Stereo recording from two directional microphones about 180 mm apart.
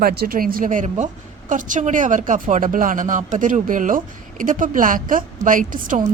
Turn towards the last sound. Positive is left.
turn(degrees=-45)  # may be behind; listen again after turning